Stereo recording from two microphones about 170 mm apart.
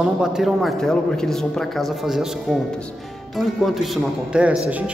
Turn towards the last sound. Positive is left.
turn(degrees=-5)  # may be behind; listen again after turning